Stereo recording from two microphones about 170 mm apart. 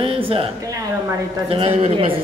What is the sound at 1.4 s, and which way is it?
Speech, 35° right (ahead or behind).